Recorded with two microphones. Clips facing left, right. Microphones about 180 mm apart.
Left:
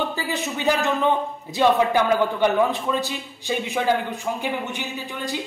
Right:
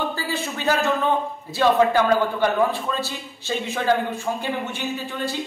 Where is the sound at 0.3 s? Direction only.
20° left (ahead or behind).